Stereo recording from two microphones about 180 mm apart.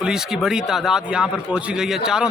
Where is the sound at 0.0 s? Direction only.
5° right (ahead or behind).